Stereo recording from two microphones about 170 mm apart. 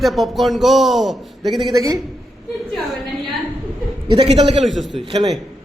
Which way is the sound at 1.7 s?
20° right (ahead or behind).